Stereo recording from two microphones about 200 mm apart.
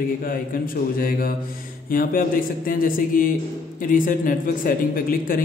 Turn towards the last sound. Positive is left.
turn(degrees=45)  # may be behind; listen again after turning